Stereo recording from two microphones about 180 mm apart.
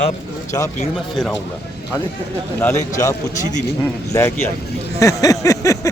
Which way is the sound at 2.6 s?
15° left (ahead or behind).